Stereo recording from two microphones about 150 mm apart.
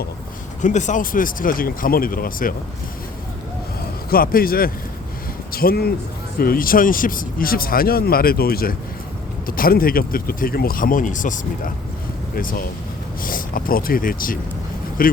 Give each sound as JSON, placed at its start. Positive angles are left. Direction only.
{"t": 0.6, "sound": "speech", "side_deg": 55}
{"t": 4.1, "sound": "speech", "side_deg": 75}
{"t": 6.4, "sound": "speech", "side_deg": 75}
{"t": 9.5, "sound": "speech", "side_deg": 75}